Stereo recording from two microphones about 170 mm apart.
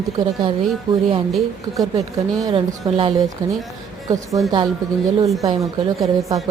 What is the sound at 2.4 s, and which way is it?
Speech, 30° right (ahead or behind).